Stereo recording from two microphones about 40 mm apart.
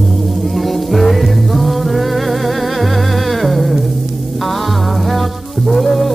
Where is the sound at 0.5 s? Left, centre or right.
Centre.